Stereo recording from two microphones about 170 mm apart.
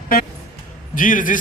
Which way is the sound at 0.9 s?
50° left (ahead or behind).